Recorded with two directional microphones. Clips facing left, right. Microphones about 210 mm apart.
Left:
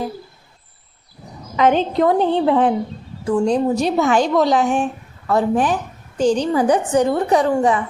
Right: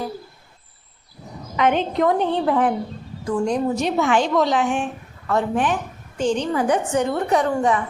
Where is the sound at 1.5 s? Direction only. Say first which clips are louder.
Left 4 dB; 35° left (ahead or behind).